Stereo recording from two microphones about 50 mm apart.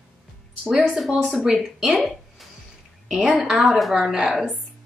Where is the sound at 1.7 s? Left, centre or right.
Centre.